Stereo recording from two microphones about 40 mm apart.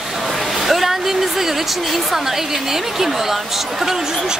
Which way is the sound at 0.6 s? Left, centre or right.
Centre.